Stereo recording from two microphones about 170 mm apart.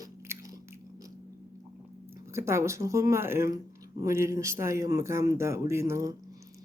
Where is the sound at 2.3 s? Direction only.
15° right (ahead or behind).